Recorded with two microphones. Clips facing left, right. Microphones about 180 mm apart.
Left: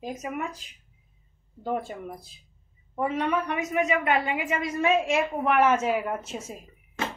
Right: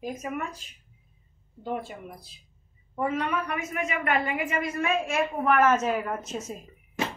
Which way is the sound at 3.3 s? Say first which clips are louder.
Left 3 dB; 25° left (ahead or behind).